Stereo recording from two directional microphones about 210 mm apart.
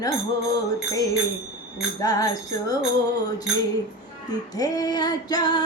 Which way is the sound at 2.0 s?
15° left (ahead or behind).